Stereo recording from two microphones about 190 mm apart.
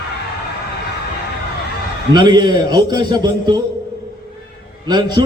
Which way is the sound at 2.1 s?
20° right (ahead or behind).